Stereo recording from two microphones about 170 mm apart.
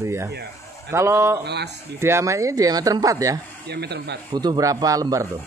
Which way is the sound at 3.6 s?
75° right (ahead or behind).